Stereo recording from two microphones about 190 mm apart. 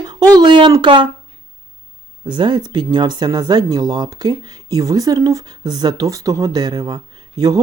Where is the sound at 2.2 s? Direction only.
25° right (ahead or behind).